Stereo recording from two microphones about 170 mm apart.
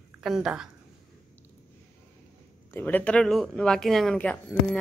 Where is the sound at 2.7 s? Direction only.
10° left (ahead or behind).